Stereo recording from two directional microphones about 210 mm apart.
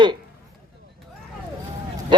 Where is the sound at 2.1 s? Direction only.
20° right (ahead or behind).